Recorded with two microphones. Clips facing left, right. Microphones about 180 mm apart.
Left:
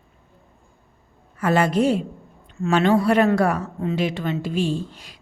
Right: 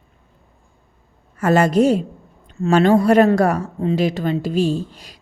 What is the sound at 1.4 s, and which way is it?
A woman's voice, 45° right (ahead or behind).